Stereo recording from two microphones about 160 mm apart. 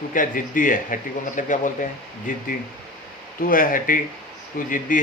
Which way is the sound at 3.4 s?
60° left (ahead or behind).